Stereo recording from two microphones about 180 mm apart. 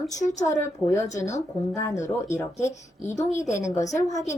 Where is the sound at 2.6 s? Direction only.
40° left (ahead or behind).